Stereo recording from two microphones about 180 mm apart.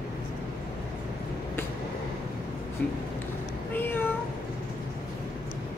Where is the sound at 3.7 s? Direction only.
10° left (ahead or behind).